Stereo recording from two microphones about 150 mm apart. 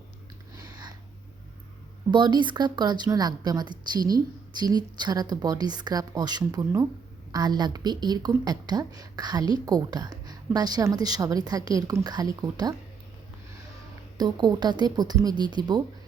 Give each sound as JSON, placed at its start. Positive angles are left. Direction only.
{"t": 0.5, "sound": "a sound", "side_deg": -25}
{"t": 2.0, "sound": "a woman's voice", "side_deg": -30}
{"t": 14.2, "sound": "a woman's voice", "side_deg": -30}